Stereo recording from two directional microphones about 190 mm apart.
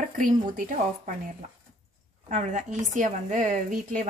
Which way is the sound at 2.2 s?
40° right (ahead or behind).